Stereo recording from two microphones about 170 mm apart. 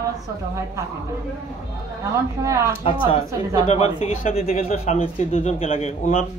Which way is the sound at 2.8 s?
30° left (ahead or behind).